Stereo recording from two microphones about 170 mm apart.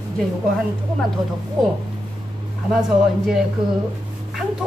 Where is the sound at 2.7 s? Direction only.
5° right (ahead or behind).